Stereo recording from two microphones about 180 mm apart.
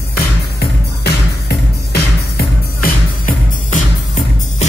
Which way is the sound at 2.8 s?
50° left (ahead or behind).